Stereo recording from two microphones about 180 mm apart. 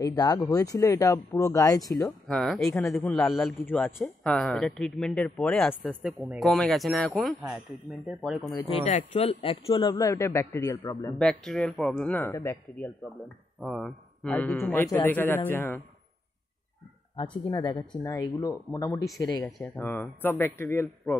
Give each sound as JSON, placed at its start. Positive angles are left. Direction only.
{"t": 0.0, "sound": "a man's voice", "side_deg": 20}
{"t": 2.2, "sound": "a man's voice", "side_deg": 5}
{"t": 8.8, "sound": "a man's voice", "side_deg": 40}
{"t": 11.1, "sound": "a man's voice", "side_deg": 5}
{"t": 13.6, "sound": "a man's voice", "side_deg": 0}
{"t": 17.1, "sound": "a man's voice", "side_deg": 25}